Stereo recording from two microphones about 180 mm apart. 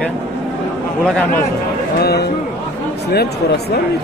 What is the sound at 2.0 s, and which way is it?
Speech, 65° left (ahead or behind).